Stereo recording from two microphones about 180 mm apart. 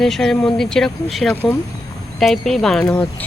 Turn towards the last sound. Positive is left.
turn(degrees=5)  # may be behind; listen again after turning